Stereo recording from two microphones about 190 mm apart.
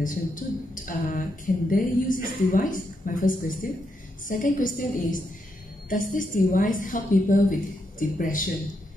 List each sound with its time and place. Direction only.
0.0 s speech: 45° left (ahead or behind)